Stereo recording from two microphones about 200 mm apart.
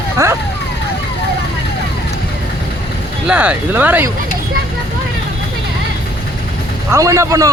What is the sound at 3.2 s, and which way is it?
Speech, 5° right (ahead or behind).